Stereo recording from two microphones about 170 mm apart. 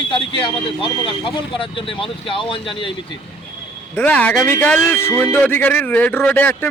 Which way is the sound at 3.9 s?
10° left (ahead or behind).